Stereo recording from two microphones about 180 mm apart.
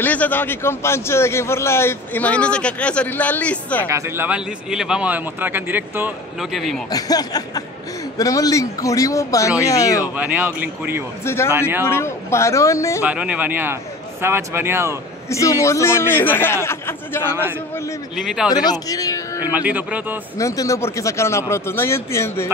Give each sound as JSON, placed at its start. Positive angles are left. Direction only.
{"t": 0.0, "sound": "a man's voice", "side_deg": 10}
{"t": 3.8, "sound": "speech", "side_deg": -15}
{"t": 6.9, "sound": "a man's voice", "side_deg": 20}
{"t": 10.0, "sound": "speech", "side_deg": -10}
{"t": 11.2, "sound": "a man's voice", "side_deg": 15}
{"t": 13.0, "sound": "speech", "side_deg": -5}
{"t": 15.2, "sound": "a man's voice", "side_deg": 15}
{"t": 18.1, "sound": "speech", "side_deg": 0}
{"t": 18.5, "sound": "speech", "side_deg": 20}
{"t": 19.4, "sound": "speech", "side_deg": -10}
{"t": 20.3, "sound": "a man's voice", "side_deg": 15}